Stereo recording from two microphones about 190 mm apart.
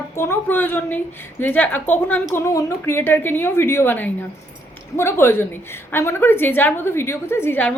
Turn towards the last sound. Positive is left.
turn(degrees=10)  # may be behind; listen again after turning